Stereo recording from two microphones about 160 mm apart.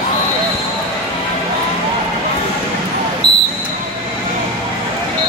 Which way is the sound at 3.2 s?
40° left (ahead or behind).